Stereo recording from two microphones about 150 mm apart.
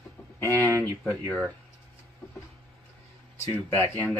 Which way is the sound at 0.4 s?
15° left (ahead or behind).